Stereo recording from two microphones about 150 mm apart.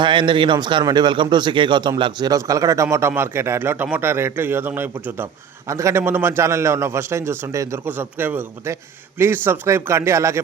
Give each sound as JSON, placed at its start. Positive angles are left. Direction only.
{"t": 0.0, "sound": "a man's voice", "side_deg": -30}